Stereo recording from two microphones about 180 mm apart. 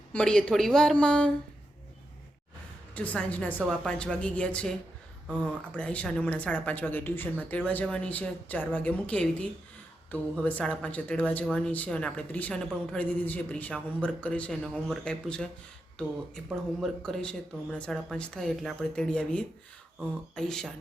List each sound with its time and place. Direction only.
0.1 s speech: 5° left (ahead or behind)
2.9 s speech: 5° left (ahead or behind)